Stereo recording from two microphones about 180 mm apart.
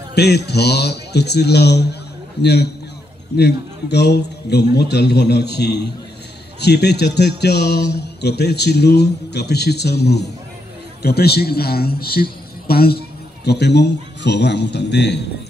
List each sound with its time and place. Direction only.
0.1 s a man's voice: 65° left (ahead or behind)